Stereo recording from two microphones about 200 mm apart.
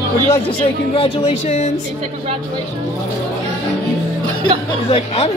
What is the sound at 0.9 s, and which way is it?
Speech, 30° left (ahead or behind).